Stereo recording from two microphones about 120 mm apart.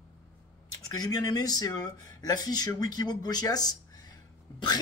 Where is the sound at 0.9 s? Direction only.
30° left (ahead or behind).